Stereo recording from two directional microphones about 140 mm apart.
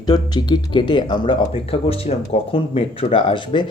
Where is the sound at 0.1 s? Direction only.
30° left (ahead or behind).